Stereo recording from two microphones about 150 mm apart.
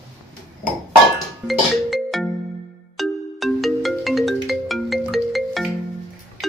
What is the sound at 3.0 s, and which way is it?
Ringtone, centre (ahead or behind).